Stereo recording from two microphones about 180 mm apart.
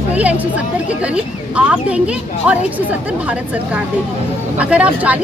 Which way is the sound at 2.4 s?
5° right (ahead or behind).